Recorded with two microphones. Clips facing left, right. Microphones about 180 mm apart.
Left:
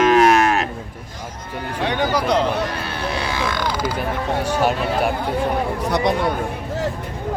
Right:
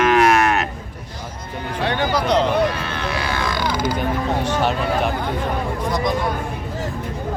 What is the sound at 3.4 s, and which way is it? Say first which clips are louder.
Creak: right 1 dB; 5° left (ahead or behind).